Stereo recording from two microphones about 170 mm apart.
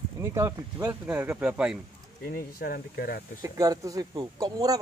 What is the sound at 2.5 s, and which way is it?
Speech, 65° left (ahead or behind).